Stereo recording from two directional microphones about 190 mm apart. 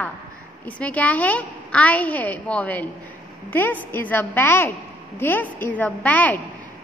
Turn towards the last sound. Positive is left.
turn(degrees=10)  # may be behind; listen again after turning